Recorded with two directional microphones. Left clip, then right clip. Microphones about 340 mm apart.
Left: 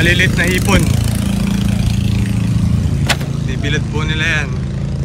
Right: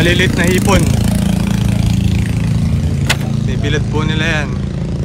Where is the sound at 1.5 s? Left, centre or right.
Right.